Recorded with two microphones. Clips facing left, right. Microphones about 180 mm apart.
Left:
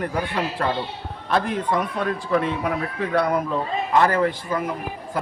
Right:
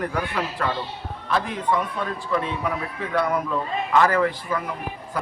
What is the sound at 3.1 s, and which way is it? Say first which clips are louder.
A man's voice: left 1 dB; 25° left (ahead or behind).